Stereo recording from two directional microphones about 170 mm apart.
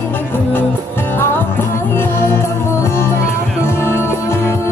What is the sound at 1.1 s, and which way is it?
Music, 15° left (ahead or behind).